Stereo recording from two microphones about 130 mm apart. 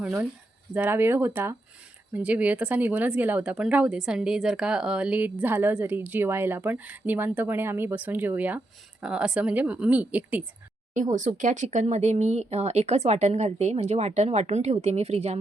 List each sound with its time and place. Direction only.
0.0 s a woman's voice: 10° right (ahead or behind)
10.9 s speech: 75° right (ahead or behind); by 15.4 s 55° right (ahead or behind)